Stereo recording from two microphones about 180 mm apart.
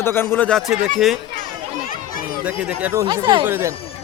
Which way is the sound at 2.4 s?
10° right (ahead or behind).